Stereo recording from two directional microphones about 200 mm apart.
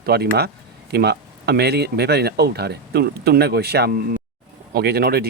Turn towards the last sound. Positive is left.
turn(degrees=-50)  # may be behind; listen again after turning